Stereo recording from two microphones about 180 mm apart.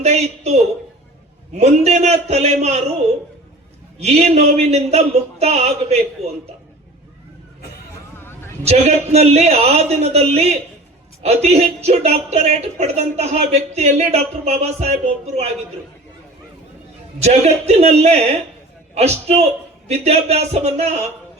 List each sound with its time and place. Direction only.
0.0 s speech: 35° right (ahead or behind)
4.0 s speech: 35° right (ahead or behind)
8.6 s speech: 35° right (ahead or behind)
17.2 s speech: 35° right (ahead or behind)